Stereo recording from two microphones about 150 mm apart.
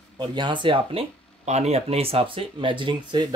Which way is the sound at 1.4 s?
45° right (ahead or behind).